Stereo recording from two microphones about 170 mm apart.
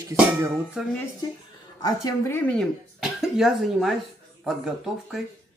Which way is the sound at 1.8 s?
20° left (ahead or behind).